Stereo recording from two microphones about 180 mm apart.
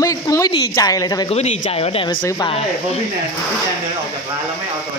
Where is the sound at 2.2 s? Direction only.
20° left (ahead or behind).